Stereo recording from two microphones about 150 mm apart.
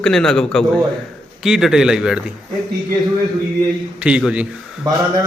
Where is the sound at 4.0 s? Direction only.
5° right (ahead or behind).